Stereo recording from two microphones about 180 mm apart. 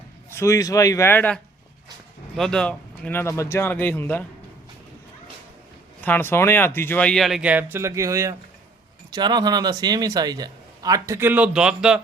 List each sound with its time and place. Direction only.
0.3 s speech: 15° left (ahead or behind)
6.0 s a man's voice: 10° left (ahead or behind)